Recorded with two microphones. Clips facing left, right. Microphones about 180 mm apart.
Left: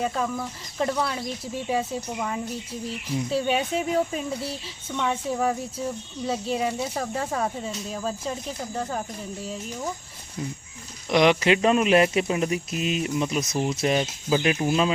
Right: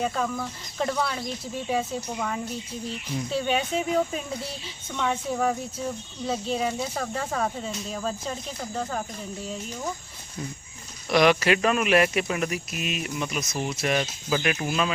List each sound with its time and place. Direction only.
0.0 s speech: 5° left (ahead or behind)
11.1 s speech: 20° left (ahead or behind)